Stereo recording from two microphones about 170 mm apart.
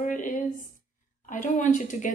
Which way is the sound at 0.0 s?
50° left (ahead or behind).